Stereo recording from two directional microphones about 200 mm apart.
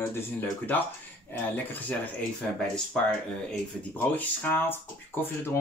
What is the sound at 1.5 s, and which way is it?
Speech, 10° left (ahead or behind).